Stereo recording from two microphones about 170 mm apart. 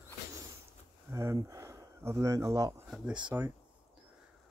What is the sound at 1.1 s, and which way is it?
Speech, 15° right (ahead or behind).